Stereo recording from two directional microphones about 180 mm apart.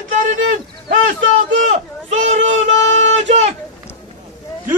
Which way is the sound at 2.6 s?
90° right.